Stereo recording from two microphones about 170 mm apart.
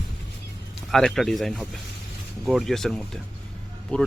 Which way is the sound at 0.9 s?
Centre (ahead or behind).